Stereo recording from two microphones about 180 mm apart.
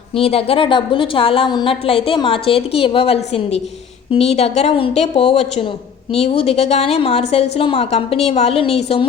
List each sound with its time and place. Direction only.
0.1 s a woman's voice: 35° left (ahead or behind)